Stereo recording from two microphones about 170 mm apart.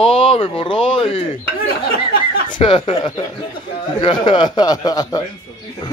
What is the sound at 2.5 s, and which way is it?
A man's voice, 30° left (ahead or behind).